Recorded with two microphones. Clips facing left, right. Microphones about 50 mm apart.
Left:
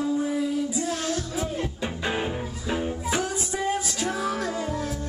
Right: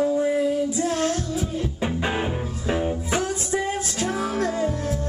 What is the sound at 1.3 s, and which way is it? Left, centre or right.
Music, left.